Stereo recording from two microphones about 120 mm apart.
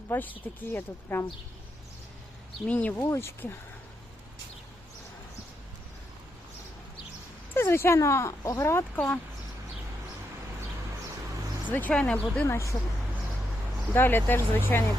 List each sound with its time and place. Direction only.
0.1 s speech: 15° left (ahead or behind)
2.6 s speech: 15° left (ahead or behind)
7.5 s speech: 20° left (ahead or behind)
11.7 s speech: 10° left (ahead or behind)
12.5 s speech: 25° left (ahead or behind)
13.9 s speech: 15° left (ahead or behind)